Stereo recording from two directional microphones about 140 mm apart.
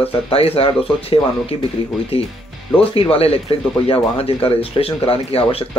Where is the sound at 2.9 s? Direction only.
40° left (ahead or behind).